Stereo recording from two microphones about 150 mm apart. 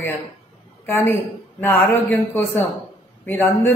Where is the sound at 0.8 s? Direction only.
15° left (ahead or behind).